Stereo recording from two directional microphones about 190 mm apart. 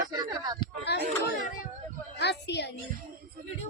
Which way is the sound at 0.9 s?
60° left (ahead or behind).